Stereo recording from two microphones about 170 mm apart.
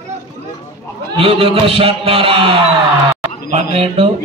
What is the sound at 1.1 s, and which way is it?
A man's voice, 35° right (ahead or behind).